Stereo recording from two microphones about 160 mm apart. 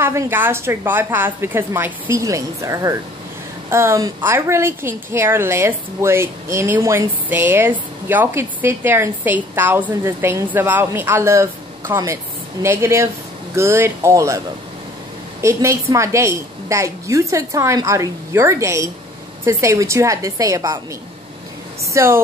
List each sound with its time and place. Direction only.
0.0 s a woman's voice: 15° right (ahead or behind)
15.4 s a woman's voice: 20° right (ahead or behind)
21.9 s a woman's voice: 15° right (ahead or behind)